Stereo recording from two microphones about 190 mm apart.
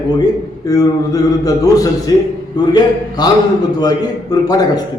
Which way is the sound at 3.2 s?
20° left (ahead or behind).